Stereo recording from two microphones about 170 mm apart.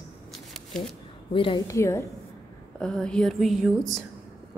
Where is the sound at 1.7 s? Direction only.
15° left (ahead or behind).